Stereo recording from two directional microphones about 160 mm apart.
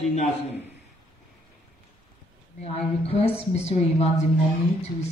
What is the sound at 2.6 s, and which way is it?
A woman's voice, 40° left (ahead or behind).